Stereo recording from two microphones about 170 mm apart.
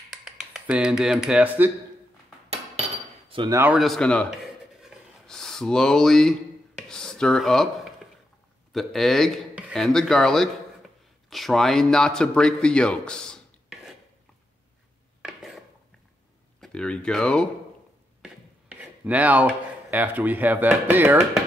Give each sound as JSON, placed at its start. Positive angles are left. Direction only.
{"t": 0.1, "sound": "speech", "side_deg": -5}
{"t": 3.3, "sound": "a sound", "side_deg": -30}
{"t": 3.7, "sound": "speech", "side_deg": 0}
{"t": 4.8, "sound": "a sound", "side_deg": 5}
{"t": 8.7, "sound": "speech", "side_deg": 0}
{"t": 15.2, "sound": "mechanisms", "side_deg": 0}
{"t": 16.6, "sound": "speech", "side_deg": 5}
{"t": 18.2, "sound": "speech", "side_deg": -10}